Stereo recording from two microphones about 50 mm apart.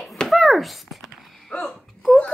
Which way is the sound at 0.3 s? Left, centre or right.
Centre.